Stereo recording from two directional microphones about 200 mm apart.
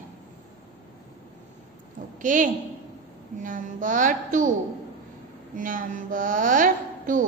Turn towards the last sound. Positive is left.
turn(degrees=-40)  # may be behind; listen again after turning